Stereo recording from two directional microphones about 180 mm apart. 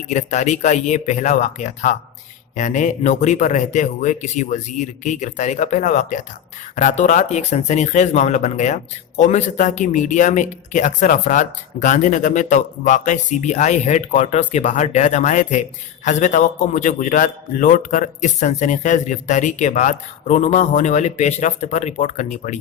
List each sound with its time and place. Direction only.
0.1 s a man's voice: 40° left (ahead or behind)